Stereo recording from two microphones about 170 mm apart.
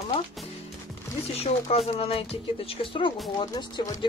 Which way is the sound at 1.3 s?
35° left (ahead or behind).